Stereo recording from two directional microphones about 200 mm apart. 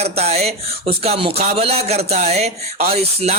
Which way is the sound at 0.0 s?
30° right (ahead or behind).